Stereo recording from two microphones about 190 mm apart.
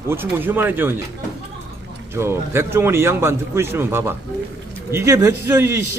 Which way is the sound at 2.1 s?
15° right (ahead or behind).